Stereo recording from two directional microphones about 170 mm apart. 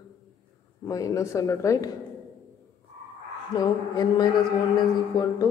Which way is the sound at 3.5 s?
25° left (ahead or behind).